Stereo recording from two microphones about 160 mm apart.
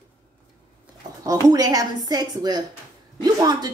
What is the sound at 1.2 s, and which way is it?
A woman's voice, 25° right (ahead or behind).